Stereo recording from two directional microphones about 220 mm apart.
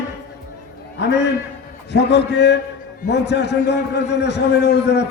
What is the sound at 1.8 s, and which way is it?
A man's voice, 50° left (ahead or behind).